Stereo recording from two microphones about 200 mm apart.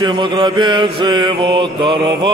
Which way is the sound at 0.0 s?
25° right (ahead or behind).